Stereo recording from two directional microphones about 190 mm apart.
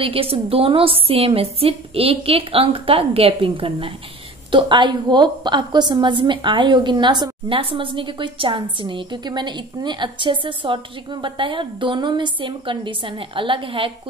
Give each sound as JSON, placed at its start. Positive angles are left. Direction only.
{"t": 0.0, "sound": "a woman's voice", "side_deg": -30}